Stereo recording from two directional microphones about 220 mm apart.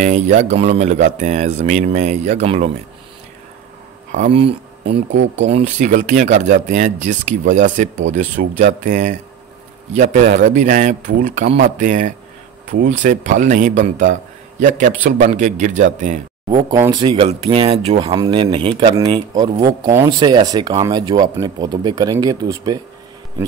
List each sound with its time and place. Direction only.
0.0 s speech: 35° right (ahead or behind)
4.1 s speech: 30° right (ahead or behind)
5.1 s speech: 55° right (ahead or behind)
5.5 s speech: 30° right (ahead or behind)
16.4 s speech: 15° right (ahead or behind)